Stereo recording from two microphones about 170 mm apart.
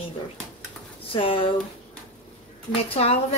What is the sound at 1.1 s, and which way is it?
Speech, 30° left (ahead or behind).